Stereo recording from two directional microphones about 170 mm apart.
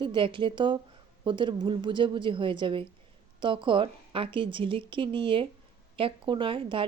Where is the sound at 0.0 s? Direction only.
30° right (ahead or behind).